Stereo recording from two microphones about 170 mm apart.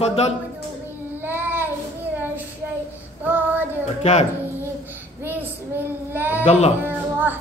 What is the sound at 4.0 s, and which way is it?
Speech, 40° left (ahead or behind).